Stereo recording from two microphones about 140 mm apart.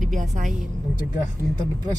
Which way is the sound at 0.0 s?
60° right (ahead or behind).